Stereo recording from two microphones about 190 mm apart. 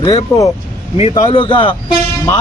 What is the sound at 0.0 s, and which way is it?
Speech, 20° left (ahead or behind).